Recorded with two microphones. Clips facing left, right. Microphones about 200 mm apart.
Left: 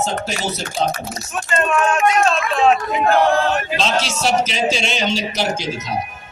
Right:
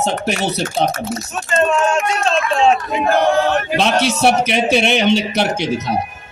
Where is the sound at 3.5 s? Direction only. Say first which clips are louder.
Right 3 dB; 60° right (ahead or behind).